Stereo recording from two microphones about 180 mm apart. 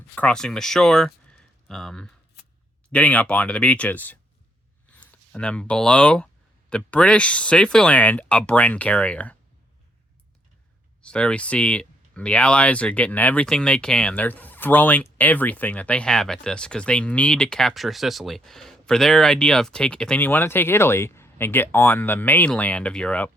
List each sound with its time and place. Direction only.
0.2 s speech: 5° left (ahead or behind)
11.0 s speech: 5° left (ahead or behind)